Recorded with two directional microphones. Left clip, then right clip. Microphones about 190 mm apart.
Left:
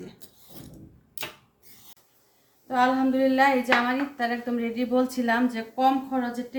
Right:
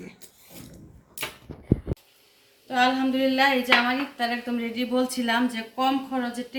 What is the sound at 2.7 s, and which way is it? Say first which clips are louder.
Speech: even; 10° left (ahead or behind).